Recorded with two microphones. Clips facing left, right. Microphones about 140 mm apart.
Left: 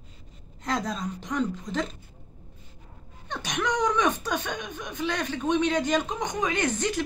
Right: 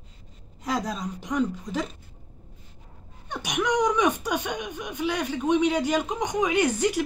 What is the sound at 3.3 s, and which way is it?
Speech, 10° right (ahead or behind).